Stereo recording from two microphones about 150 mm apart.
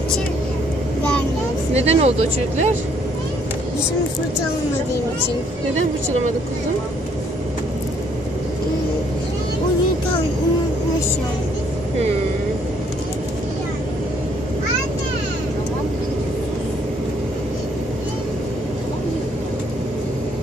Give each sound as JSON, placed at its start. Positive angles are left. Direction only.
{"t": 1.7, "sound": "speech", "side_deg": -45}